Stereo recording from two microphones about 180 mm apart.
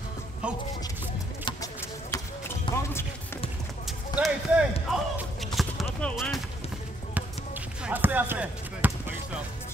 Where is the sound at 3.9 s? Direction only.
5° right (ahead or behind).